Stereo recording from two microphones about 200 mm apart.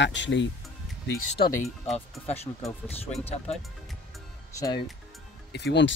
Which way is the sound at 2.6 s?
15° left (ahead or behind).